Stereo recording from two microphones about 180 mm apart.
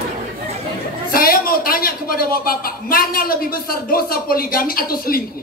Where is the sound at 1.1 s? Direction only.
55° left (ahead or behind).